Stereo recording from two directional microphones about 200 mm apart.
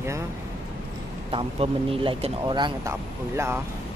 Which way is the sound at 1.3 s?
25° right (ahead or behind).